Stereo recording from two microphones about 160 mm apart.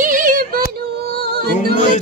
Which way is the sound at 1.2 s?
80° right.